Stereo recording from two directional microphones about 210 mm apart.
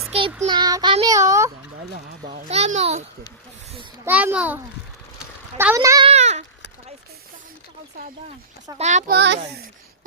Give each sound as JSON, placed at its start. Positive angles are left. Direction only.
{"t": 0.1, "sound": "child singing", "side_deg": -25}
{"t": 2.2, "sound": "a child's voice", "side_deg": -30}
{"t": 4.0, "sound": "a child's voice", "side_deg": -10}
{"t": 6.1, "sound": "a sound", "side_deg": -30}
{"t": 8.8, "sound": "a child's voice", "side_deg": -35}
{"t": 9.1, "sound": "speech", "side_deg": -55}